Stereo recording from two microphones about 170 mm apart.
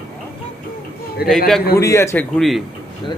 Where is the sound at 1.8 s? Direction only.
15° left (ahead or behind).